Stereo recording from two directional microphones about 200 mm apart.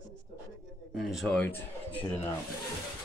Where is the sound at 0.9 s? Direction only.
Centre (ahead or behind).